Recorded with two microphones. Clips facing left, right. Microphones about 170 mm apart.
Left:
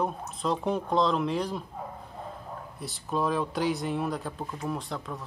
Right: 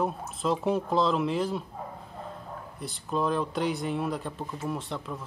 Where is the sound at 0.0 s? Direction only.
Centre (ahead or behind).